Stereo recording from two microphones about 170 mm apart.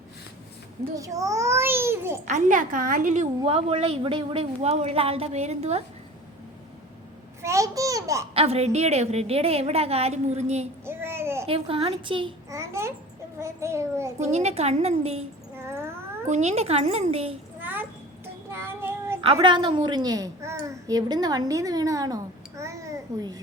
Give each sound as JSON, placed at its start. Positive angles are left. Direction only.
{"t": 0.9, "sound": "a child's voice", "side_deg": -20}
{"t": 2.2, "sound": "a woman's voice", "side_deg": -45}
{"t": 7.4, "sound": "babbling", "side_deg": -20}
{"t": 8.3, "sound": "a woman's voice", "side_deg": -35}
{"t": 10.8, "sound": "babbling", "side_deg": -15}
{"t": 11.4, "sound": "a woman's voice", "side_deg": -35}
{"t": 12.5, "sound": "a child's voice", "side_deg": -15}
{"t": 14.2, "sound": "a woman's voice", "side_deg": -40}
{"t": 15.5, "sound": "a sound", "side_deg": -15}
{"t": 16.2, "sound": "a woman's voice", "side_deg": -40}
{"t": 17.6, "sound": "a sound", "side_deg": -10}
{"t": 18.5, "sound": "child singing", "side_deg": -15}
{"t": 19.2, "sound": "a child's voice", "side_deg": -30}